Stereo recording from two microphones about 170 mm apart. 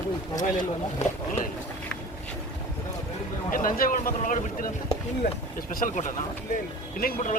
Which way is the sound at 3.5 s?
55° left (ahead or behind).